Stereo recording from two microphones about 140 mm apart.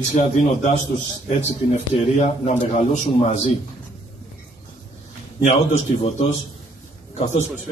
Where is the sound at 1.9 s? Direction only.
55° left (ahead or behind).